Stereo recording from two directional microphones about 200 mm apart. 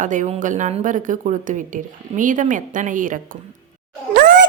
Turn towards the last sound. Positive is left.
turn(degrees=-45)  # may be behind; listen again after turning